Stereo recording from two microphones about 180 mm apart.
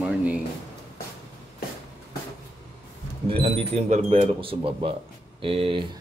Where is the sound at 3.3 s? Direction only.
30° right (ahead or behind).